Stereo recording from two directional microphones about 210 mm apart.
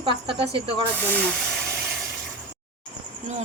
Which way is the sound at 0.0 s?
25° right (ahead or behind).